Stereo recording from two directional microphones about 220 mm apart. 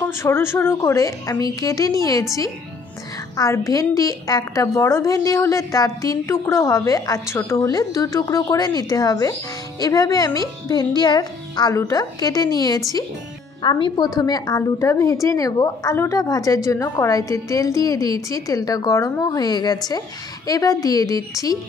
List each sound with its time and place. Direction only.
0.0 s a woman's voice: 10° left (ahead or behind)
3.3 s a woman's voice: 15° left (ahead or behind)